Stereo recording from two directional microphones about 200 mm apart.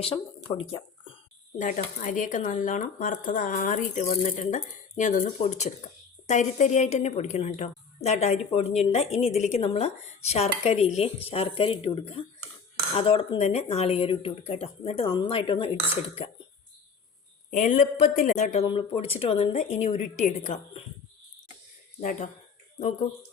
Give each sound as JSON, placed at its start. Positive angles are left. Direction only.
{"t": 0.0, "sound": "speech", "side_deg": 30}
{"t": 1.5, "sound": "speech", "side_deg": 40}
{"t": 17.5, "sound": "speech", "side_deg": 35}